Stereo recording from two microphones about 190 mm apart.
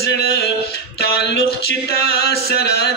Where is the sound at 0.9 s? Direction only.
60° left (ahead or behind).